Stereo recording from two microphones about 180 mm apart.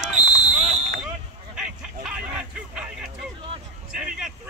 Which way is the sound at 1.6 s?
5° right (ahead or behind).